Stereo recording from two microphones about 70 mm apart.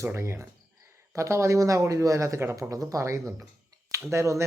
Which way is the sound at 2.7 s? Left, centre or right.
Right.